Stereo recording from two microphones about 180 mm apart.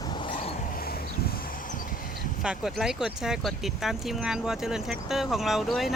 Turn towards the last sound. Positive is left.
turn(degrees=0)  # may be behind; listen again after turning